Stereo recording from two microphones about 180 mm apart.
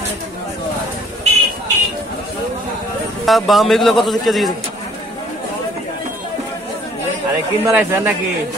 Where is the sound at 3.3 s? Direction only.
Centre (ahead or behind).